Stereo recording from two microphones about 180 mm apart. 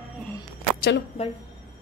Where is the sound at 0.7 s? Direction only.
60° left (ahead or behind).